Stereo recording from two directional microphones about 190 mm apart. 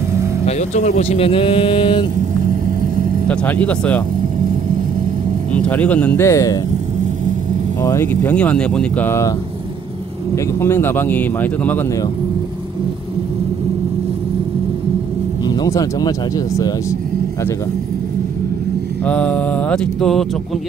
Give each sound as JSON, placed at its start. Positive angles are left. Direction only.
{"t": 0.5, "sound": "speech", "side_deg": 40}
{"t": 3.3, "sound": "speech", "side_deg": 5}
{"t": 5.5, "sound": "speech", "side_deg": 5}
{"t": 7.8, "sound": "speech", "side_deg": 15}
{"t": 10.3, "sound": "speech", "side_deg": 10}
{"t": 15.5, "sound": "speech", "side_deg": 20}
{"t": 19.0, "sound": "mantra", "side_deg": 5}